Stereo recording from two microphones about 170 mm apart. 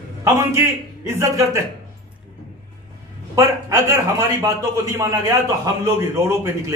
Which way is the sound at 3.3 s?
20° right (ahead or behind).